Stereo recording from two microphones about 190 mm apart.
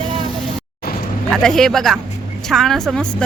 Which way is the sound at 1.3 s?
5° left (ahead or behind).